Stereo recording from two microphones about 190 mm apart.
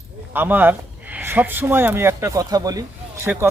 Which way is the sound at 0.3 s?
10° right (ahead or behind).